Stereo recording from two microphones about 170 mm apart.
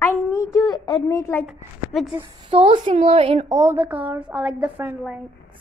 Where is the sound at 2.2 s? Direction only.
35° right (ahead or behind).